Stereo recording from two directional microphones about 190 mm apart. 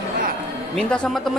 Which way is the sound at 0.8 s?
5° left (ahead or behind).